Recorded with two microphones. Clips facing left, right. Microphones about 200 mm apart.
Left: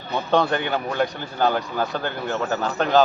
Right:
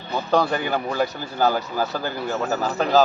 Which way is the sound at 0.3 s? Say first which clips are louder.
Even; centre (ahead or behind).